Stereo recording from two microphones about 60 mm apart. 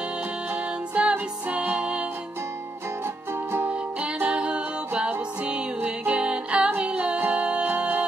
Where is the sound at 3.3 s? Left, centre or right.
Right.